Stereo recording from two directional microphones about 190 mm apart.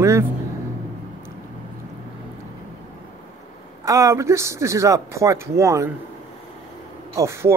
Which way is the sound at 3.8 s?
15° right (ahead or behind).